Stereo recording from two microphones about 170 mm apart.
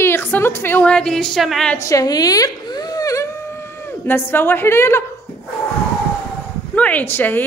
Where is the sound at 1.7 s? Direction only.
20° left (ahead or behind).